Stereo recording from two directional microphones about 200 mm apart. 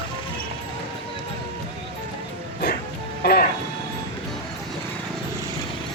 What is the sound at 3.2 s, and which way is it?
Music, 50° left (ahead or behind).